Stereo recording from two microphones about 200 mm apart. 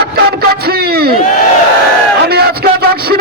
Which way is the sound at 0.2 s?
50° right (ahead or behind).